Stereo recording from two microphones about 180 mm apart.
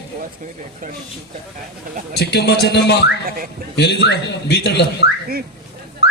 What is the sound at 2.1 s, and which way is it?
Speech, 65° left (ahead or behind).